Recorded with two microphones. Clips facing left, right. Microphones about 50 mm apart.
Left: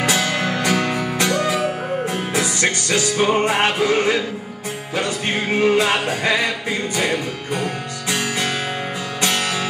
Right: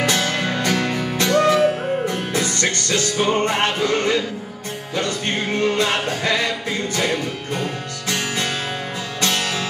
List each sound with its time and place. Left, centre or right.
0.0 s music: centre
9.2 s music: left